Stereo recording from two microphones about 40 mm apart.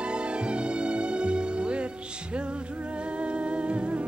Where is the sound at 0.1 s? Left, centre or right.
Right.